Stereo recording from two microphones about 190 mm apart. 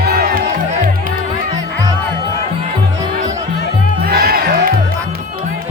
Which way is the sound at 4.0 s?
55° right (ahead or behind).